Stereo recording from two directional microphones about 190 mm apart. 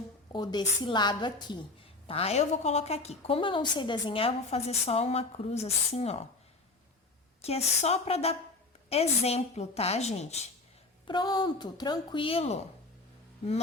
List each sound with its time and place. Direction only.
0.3 s a woman's voice: 20° left (ahead or behind)
7.4 s a woman's voice: 35° left (ahead or behind)
11.0 s speech: 25° left (ahead or behind)